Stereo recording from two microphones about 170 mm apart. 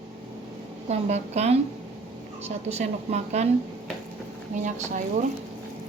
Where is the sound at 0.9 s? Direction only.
40° right (ahead or behind).